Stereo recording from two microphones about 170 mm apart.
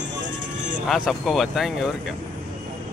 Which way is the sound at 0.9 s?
Centre (ahead or behind).